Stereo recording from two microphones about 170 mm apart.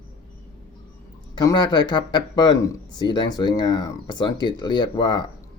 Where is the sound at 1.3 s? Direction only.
25° left (ahead or behind).